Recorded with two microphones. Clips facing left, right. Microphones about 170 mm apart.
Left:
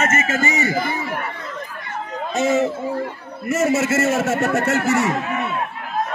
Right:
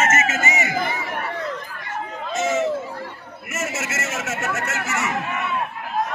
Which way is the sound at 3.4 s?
30° left (ahead or behind).